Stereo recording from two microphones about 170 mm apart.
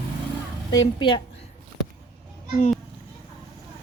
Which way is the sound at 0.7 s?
25° left (ahead or behind).